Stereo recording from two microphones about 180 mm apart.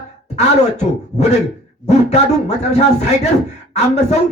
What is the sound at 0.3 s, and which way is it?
Speech, 40° left (ahead or behind).